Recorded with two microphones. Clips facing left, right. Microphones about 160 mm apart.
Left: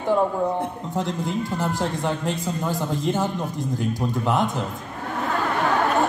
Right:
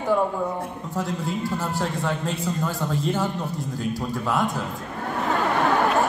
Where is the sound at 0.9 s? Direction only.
20° left (ahead or behind).